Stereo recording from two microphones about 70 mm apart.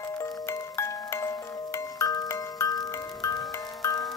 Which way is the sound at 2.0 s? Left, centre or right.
Left.